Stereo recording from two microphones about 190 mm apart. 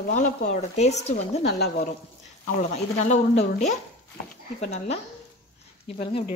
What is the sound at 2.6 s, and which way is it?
Speech, 40° left (ahead or behind).